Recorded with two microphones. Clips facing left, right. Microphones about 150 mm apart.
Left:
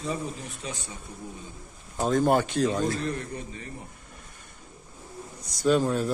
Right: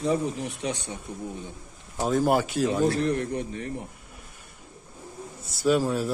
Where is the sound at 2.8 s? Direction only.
70° right (ahead or behind).